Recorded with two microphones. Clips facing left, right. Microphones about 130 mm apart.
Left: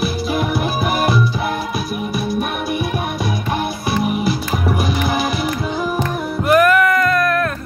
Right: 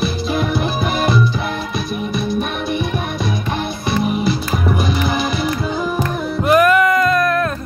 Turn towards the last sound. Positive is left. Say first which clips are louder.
# right 1 dB
turn(degrees=-20)  # may be behind; listen again after turning